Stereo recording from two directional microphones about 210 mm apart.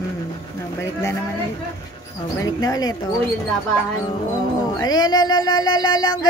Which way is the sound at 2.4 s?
15° left (ahead or behind).